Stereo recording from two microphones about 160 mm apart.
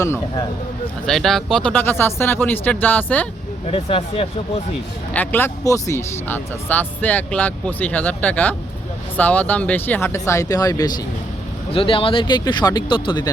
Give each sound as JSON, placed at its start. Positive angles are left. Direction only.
{"t": 0.0, "sound": "speech", "side_deg": 20}
{"t": 1.0, "sound": "speech", "side_deg": 0}
{"t": 3.7, "sound": "speech", "side_deg": 35}
{"t": 5.1, "sound": "speech", "side_deg": 10}